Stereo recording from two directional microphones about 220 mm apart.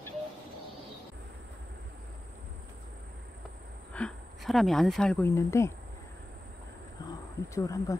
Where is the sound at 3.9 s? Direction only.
5° left (ahead or behind).